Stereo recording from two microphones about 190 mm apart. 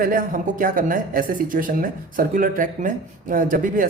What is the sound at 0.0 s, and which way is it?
A woman's voice, 45° right (ahead or behind).